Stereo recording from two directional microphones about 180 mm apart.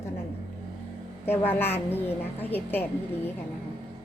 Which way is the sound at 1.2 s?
10° left (ahead or behind).